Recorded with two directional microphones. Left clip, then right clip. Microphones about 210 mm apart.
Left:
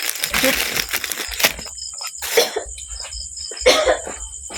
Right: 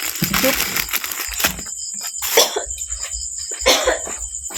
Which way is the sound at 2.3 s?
25° right (ahead or behind).